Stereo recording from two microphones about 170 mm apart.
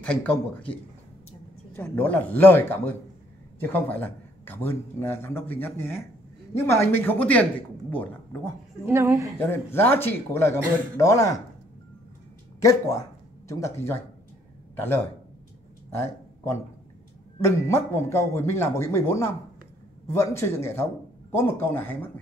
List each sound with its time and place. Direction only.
0.0 s a man's voice: 10° left (ahead or behind)
1.7 s a man's voice: 10° left (ahead or behind)
8.8 s a woman's voice: 15° right (ahead or behind)
9.4 s a man's voice: 10° left (ahead or behind)
12.6 s a man's voice: 20° left (ahead or behind)
15.9 s a sound: 15° left (ahead or behind)
17.4 s a man's voice: 15° left (ahead or behind)